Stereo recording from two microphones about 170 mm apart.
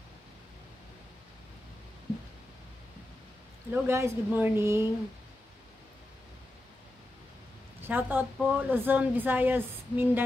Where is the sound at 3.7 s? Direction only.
15° right (ahead or behind).